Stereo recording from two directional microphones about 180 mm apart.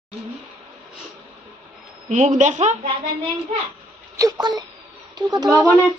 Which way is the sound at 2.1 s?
40° right (ahead or behind).